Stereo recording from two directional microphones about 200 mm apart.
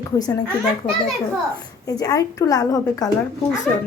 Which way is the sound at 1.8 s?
15° left (ahead or behind).